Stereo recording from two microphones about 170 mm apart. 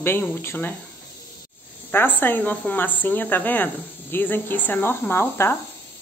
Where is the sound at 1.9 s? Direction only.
10° left (ahead or behind).